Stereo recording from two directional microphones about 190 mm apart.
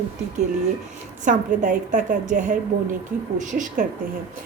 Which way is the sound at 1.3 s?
45° right (ahead or behind).